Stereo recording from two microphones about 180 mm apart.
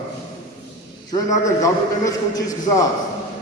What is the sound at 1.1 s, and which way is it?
A man's voice, 20° left (ahead or behind).